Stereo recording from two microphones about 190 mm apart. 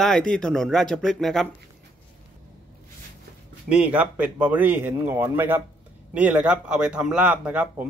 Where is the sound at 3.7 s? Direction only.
5° right (ahead or behind).